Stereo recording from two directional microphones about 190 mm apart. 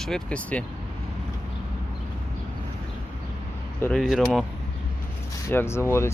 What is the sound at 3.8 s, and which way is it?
Speech, centre (ahead or behind).